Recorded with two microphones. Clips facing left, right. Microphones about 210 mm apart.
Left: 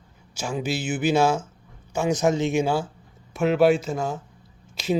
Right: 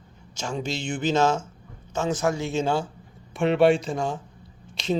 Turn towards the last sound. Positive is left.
turn(degrees=5)  # may be behind; listen again after turning